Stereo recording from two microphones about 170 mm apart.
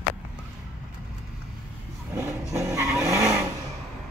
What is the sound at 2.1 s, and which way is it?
Vehicle, 15° right (ahead or behind).